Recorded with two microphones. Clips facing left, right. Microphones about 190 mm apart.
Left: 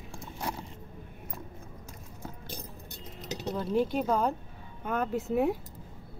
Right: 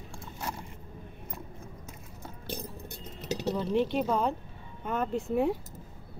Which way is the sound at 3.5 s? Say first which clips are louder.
Left 1 dB; centre (ahead or behind).